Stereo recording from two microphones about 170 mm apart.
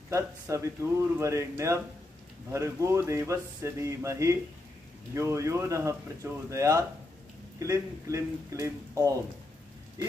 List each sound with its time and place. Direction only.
0.1 s speech: 15° right (ahead or behind)